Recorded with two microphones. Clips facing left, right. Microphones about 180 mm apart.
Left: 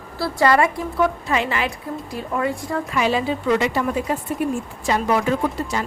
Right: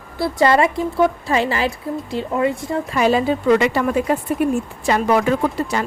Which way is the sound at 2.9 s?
45° right (ahead or behind).